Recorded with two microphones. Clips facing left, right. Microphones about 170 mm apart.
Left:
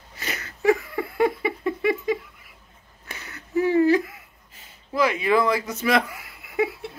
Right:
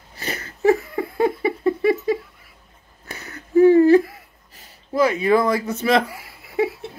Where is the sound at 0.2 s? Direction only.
30° right (ahead or behind).